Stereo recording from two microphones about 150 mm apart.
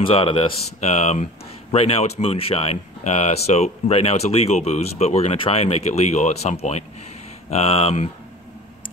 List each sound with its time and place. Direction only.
0.0 s speech: 35° left (ahead or behind)
0.7 s speech: 45° left (ahead or behind)